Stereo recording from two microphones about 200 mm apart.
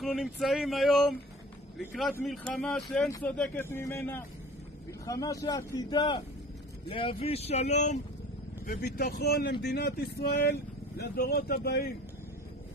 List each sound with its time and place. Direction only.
0.0 s a man's voice: centre (ahead or behind); by 8.0 s 35° left (ahead or behind)
8.6 s speech: 50° left (ahead or behind)